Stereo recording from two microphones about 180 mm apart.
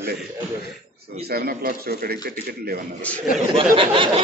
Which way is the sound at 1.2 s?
60° right (ahead or behind).